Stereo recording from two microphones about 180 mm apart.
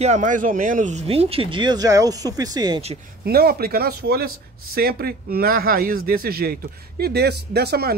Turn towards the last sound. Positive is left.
turn(degrees=-60)  # may be behind; listen again after turning